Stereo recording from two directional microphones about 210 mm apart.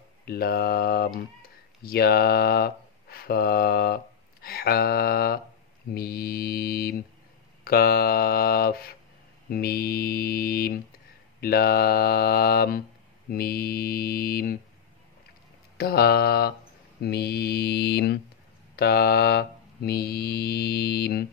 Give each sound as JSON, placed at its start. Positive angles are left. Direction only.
{"t": 0.2, "sound": "mantra", "side_deg": 45}
{"t": 1.8, "sound": "speech", "side_deg": 45}
{"t": 5.9, "sound": "mantra", "side_deg": 45}
{"t": 15.8, "sound": "mantra", "side_deg": 50}